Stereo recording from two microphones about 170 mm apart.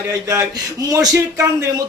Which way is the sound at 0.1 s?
15° right (ahead or behind).